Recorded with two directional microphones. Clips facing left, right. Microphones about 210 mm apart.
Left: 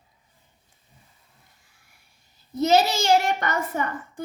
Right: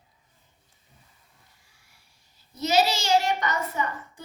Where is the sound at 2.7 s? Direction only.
55° left (ahead or behind).